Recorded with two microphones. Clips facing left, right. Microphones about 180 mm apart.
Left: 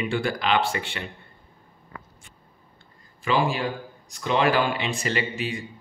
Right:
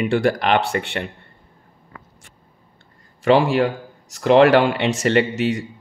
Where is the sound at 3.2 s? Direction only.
70° right (ahead or behind).